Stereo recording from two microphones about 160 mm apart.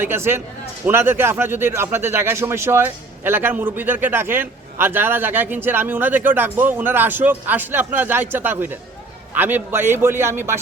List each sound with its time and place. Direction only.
0.0 s speech: 15° right (ahead or behind)